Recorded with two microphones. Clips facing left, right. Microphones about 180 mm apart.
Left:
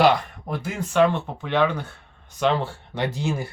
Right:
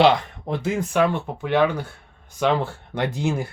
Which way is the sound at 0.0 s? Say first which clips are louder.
Right 1 dB; 25° right (ahead or behind).